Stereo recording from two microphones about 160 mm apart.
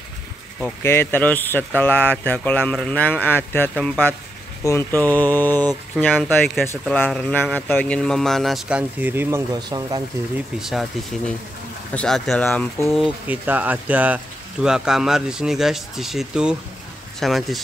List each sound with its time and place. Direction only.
0.6 s speech: 15° left (ahead or behind); by 9.6 s 15° right (ahead or behind)
9.6 s speech: 25° right (ahead or behind)
10.6 s speech: centre (ahead or behind)
13.3 s speech: 10° right (ahead or behind)